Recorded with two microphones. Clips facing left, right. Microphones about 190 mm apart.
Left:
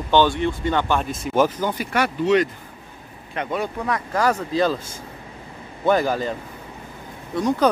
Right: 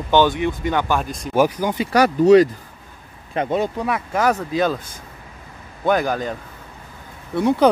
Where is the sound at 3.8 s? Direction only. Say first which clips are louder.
Right 2 dB; 5° right (ahead or behind).